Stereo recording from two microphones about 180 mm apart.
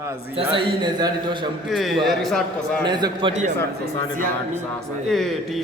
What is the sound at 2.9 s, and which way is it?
Speech, 25° right (ahead or behind).